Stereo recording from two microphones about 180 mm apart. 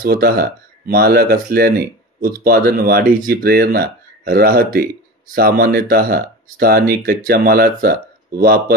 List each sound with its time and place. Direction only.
0.0 s speech: 55° right (ahead or behind)